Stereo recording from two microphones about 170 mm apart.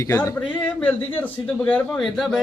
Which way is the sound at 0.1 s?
15° left (ahead or behind).